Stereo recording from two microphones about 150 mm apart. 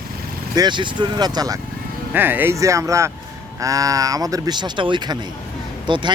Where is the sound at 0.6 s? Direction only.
30° right (ahead or behind).